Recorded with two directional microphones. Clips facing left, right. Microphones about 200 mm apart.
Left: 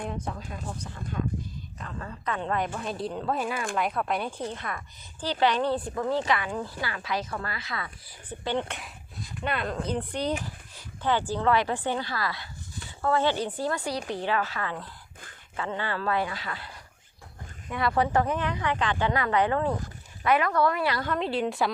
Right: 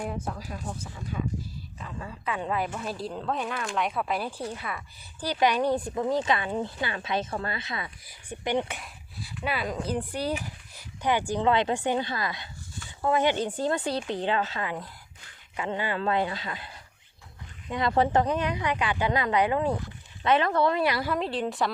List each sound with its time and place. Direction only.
0.0 s speech: 5° right (ahead or behind)
20.2 s speech: 25° right (ahead or behind)
20.9 s speech: 10° right (ahead or behind)